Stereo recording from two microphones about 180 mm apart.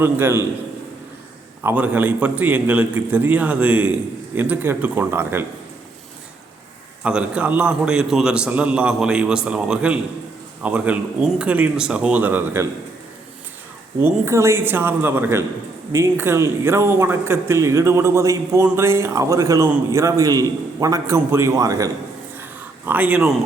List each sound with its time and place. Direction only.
0.0 s speech: 15° right (ahead or behind)
1.6 s speech: 10° right (ahead or behind)
7.0 s a man's voice: 5° right (ahead or behind)
14.0 s speech: 15° right (ahead or behind)
22.9 s speech: 10° right (ahead or behind)